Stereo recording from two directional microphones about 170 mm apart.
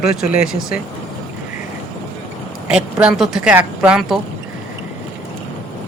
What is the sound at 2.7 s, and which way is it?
Speech, 5° right (ahead or behind).